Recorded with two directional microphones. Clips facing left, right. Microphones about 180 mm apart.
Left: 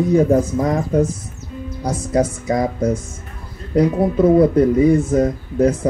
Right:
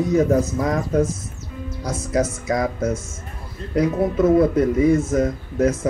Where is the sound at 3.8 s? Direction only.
30° left (ahead or behind).